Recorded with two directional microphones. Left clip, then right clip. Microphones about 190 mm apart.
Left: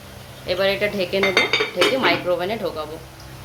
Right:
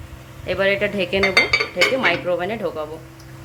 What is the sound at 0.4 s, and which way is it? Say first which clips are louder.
Speech: right 1 dB; 25° right (ahead or behind).